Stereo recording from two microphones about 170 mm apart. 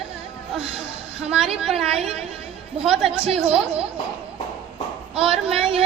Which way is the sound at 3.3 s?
35° right (ahead or behind).